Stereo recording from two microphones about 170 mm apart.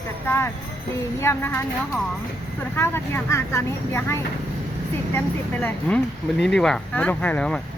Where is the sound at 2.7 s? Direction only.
15° left (ahead or behind).